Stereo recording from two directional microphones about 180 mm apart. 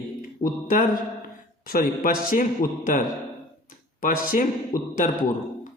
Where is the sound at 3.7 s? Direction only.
50° left (ahead or behind).